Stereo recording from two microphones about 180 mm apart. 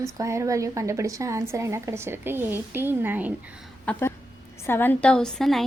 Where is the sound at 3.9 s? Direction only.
5° left (ahead or behind).